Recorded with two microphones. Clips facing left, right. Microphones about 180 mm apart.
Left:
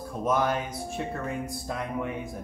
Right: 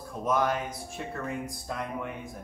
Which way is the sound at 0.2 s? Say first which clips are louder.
Left 1 dB; centre (ahead or behind).